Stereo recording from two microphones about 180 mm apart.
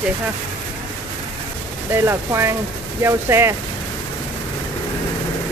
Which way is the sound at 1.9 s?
15° right (ahead or behind).